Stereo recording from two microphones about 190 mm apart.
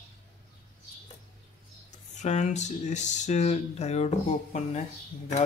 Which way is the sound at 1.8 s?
40° left (ahead or behind).